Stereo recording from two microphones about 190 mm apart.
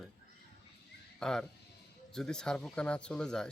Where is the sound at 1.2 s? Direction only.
5° left (ahead or behind).